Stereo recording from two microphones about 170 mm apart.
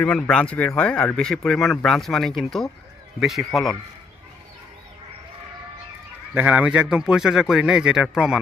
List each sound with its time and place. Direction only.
0.0 s speech: 5° left (ahead or behind)
6.3 s a man's voice: 10° right (ahead or behind)